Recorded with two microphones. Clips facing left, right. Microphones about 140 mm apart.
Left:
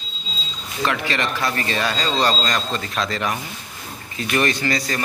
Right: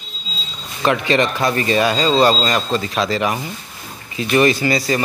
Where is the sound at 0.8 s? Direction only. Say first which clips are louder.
Right 7 dB; 20° right (ahead or behind).